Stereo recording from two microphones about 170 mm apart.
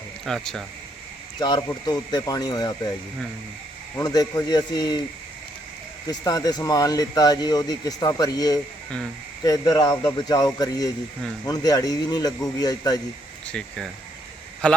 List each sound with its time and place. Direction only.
0.3 s speech: centre (ahead or behind)
1.4 s speech: 25° left (ahead or behind)
3.9 s speech: 20° left (ahead or behind)
6.1 s speech: 20° left (ahead or behind)
13.4 s a man's voice: 5° left (ahead or behind)